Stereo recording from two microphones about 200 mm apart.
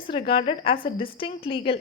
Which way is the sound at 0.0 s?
25° left (ahead or behind).